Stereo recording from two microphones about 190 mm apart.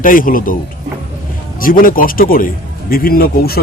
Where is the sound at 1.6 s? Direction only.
45° left (ahead or behind).